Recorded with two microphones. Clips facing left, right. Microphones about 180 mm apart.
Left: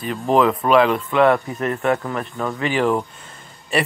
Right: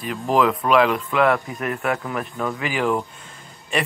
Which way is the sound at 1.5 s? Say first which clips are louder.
Left 4 dB; 30° left (ahead or behind).